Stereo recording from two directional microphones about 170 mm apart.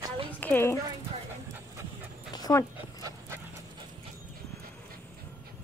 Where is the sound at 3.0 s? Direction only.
20° right (ahead or behind).